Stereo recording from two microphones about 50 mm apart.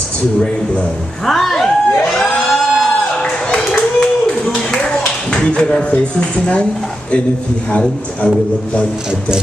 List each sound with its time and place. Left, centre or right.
1.2 s a sound: centre
3.4 s clapping: centre
5.9 s speech: left